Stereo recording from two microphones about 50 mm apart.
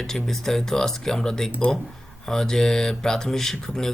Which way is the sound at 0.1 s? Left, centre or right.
Centre.